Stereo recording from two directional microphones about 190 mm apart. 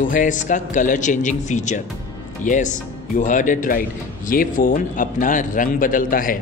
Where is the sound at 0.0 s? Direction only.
45° left (ahead or behind).